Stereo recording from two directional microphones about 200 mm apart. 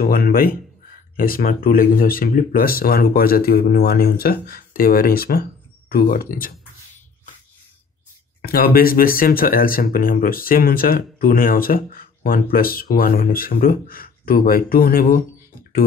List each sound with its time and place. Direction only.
0.0 s speech: 50° left (ahead or behind)
8.4 s speech: 50° left (ahead or behind)